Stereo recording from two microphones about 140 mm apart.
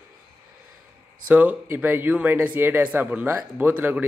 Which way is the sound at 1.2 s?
10° right (ahead or behind).